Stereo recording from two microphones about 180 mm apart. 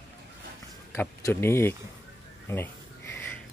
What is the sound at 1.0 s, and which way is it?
Speech, 15° left (ahead or behind).